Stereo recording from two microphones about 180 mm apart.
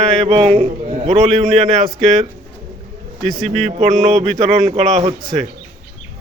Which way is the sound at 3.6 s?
40° right (ahead or behind).